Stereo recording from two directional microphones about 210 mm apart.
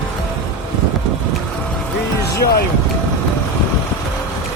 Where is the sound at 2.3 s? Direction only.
50° left (ahead or behind).